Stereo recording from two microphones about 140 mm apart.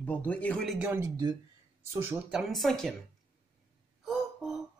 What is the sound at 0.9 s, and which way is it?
Speech, 20° right (ahead or behind).